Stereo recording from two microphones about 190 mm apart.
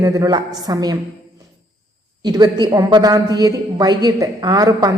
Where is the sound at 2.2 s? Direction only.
20° right (ahead or behind).